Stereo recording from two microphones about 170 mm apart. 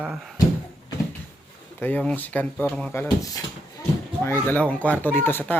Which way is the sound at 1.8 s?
10° left (ahead or behind).